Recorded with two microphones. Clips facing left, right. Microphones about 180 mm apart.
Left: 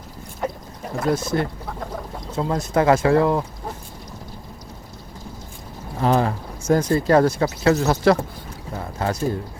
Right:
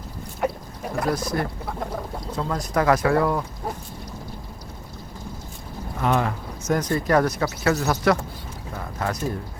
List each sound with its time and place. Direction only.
0.4 s a sound: 5° right (ahead or behind)
1.1 s speech: 25° left (ahead or behind)
6.0 s speech: 35° left (ahead or behind)
8.7 s pour: 30° left (ahead or behind)